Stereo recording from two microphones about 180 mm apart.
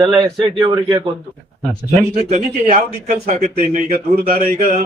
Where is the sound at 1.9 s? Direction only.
40° right (ahead or behind).